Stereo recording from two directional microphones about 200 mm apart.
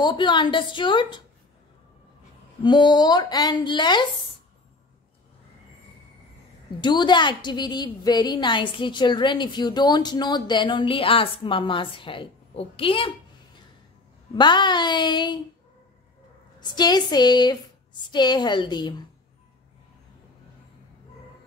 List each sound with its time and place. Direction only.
0.0 s a woman's voice: 25° left (ahead or behind)
2.6 s a woman's voice: 20° left (ahead or behind)
6.8 s a woman's voice: 20° left (ahead or behind)
14.3 s a woman's voice: 20° left (ahead or behind)
16.5 s a woman's voice: 20° left (ahead or behind)